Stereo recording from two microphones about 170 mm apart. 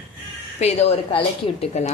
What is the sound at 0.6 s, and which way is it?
A woman's voice, 40° left (ahead or behind).